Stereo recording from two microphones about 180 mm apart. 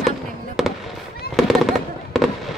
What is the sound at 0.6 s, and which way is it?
Fireworks, centre (ahead or behind).